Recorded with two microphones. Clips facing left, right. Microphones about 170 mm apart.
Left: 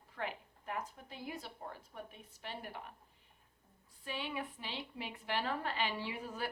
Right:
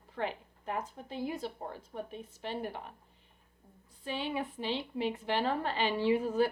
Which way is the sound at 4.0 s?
30° right (ahead or behind).